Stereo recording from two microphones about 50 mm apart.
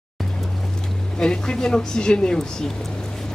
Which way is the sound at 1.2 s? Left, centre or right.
Centre.